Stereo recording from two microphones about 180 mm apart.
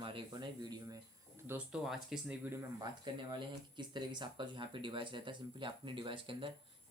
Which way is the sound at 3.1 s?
25° right (ahead or behind).